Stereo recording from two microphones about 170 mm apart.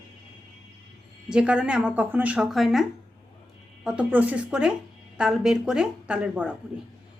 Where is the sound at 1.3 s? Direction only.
5° right (ahead or behind).